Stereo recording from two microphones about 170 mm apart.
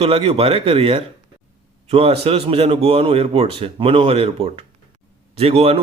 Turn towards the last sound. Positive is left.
turn(degrees=-35)  # may be behind; listen again after turning